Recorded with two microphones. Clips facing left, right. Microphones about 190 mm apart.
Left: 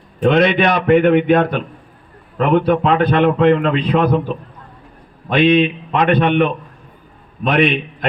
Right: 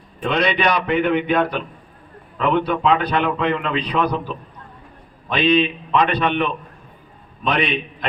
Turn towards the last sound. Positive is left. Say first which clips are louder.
# left 6 dB
turn(degrees=50)  # may be behind; listen again after turning